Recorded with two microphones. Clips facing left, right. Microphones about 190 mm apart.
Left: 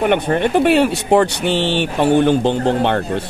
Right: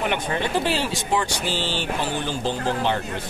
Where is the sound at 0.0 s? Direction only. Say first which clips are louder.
Left 9 dB; 55° left (ahead or behind).